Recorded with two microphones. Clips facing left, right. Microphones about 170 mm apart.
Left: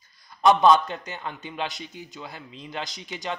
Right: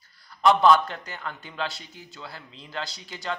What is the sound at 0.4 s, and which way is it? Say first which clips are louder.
A man's voice: left 1 dB; 20° left (ahead or behind).